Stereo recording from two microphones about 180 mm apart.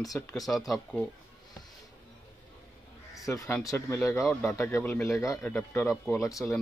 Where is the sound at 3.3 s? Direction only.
15° left (ahead or behind).